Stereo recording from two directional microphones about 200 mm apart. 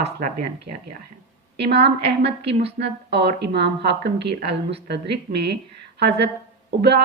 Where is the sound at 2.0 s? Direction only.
55° right (ahead or behind).